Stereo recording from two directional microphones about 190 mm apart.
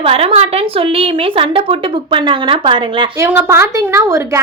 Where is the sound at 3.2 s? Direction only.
10° right (ahead or behind).